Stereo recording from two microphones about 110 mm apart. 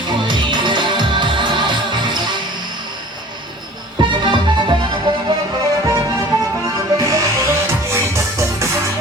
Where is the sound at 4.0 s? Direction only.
45° right (ahead or behind).